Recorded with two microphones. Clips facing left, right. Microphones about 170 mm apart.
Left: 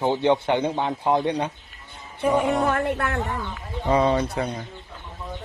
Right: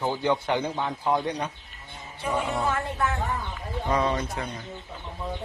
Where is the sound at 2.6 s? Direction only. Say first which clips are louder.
Left 4 dB; 60° left (ahead or behind).